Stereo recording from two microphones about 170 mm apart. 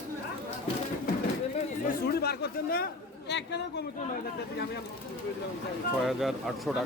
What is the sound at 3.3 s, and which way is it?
Speech, 90° left.